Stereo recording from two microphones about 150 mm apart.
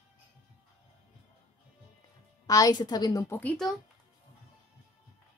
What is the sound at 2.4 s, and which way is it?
Speech, 25° left (ahead or behind).